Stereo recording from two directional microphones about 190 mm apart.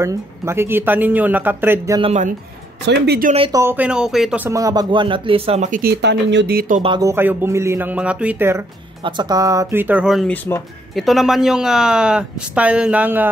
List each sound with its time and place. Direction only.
0.0 s speech: 15° right (ahead or behind)
2.0 s speech: 30° right (ahead or behind)
2.9 s speech: 60° right (ahead or behind)
3.3 s speech: 25° right (ahead or behind)
3.6 s speech: 5° right (ahead or behind); by 5.7 s 30° right (ahead or behind)
5.7 s speech: 50° right (ahead or behind)
6.8 s speech: 20° right (ahead or behind)
9.0 s speech: 25° right (ahead or behind)